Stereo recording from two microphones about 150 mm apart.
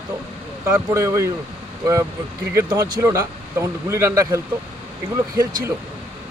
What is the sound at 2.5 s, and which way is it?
Speech, 20° right (ahead or behind).